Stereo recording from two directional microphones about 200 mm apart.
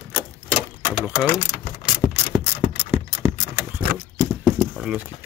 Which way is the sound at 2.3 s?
10° right (ahead or behind).